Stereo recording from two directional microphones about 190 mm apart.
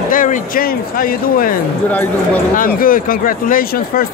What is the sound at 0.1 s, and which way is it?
Speech, 45° left (ahead or behind).